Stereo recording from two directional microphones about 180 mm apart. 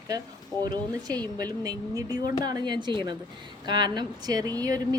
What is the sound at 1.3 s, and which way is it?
Speech, 20° right (ahead or behind).